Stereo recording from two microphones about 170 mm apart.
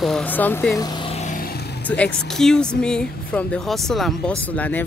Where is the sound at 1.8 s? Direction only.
5° left (ahead or behind).